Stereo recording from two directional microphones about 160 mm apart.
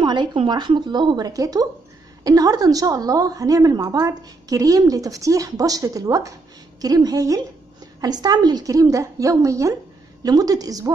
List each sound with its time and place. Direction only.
0.0 s a woman's voice: 30° right (ahead or behind)